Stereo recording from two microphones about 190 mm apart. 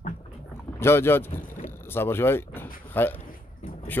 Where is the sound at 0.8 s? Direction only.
10° left (ahead or behind).